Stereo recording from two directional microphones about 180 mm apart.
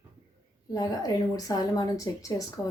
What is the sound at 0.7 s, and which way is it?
Speech, 20° left (ahead or behind).